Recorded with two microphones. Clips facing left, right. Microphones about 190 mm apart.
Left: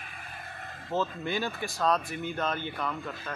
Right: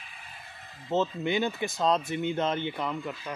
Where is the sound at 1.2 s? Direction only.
20° right (ahead or behind).